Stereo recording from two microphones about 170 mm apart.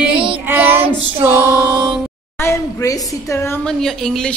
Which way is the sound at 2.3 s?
15° left (ahead or behind).